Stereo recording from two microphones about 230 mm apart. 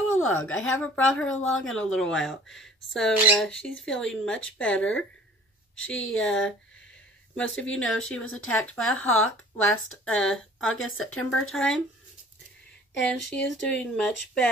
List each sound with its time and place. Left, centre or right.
0.1 s speech: centre
9.2 s speech: left
10.0 s speech: centre
10.6 s speech: left
11.1 s speech: centre
13.3 s speech: centre